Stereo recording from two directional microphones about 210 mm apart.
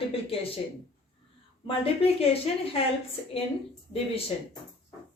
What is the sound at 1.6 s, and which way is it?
A woman's voice, 25° left (ahead or behind).